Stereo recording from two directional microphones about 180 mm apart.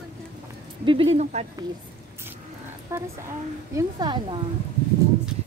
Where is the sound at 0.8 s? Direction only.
35° right (ahead or behind).